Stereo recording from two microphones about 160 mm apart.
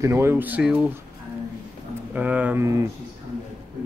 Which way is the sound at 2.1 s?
10° right (ahead or behind).